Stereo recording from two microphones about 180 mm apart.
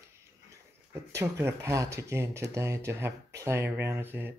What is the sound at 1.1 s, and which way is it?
Speech, 15° right (ahead or behind).